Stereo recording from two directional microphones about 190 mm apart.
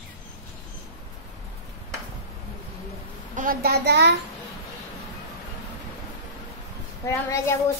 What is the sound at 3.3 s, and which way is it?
Speech, 50° right (ahead or behind).